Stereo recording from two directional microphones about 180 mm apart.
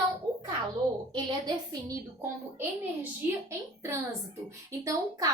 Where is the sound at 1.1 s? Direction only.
25° right (ahead or behind).